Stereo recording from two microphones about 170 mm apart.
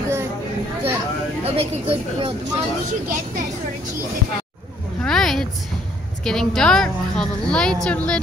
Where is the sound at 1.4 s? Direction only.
35° right (ahead or behind).